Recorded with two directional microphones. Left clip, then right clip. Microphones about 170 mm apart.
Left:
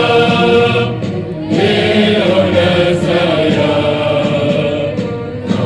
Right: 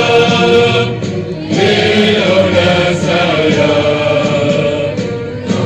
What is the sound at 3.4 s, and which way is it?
Chant, 25° right (ahead or behind).